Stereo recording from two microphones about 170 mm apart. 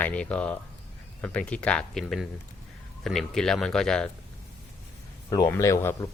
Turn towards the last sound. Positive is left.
turn(degrees=20)  # may be behind; listen again after turning